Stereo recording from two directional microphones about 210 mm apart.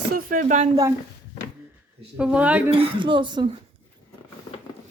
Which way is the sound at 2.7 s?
25° right (ahead or behind).